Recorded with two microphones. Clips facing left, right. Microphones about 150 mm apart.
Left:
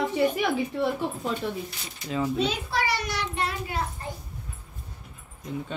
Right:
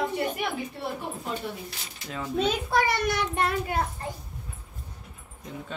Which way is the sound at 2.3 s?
50° right (ahead or behind).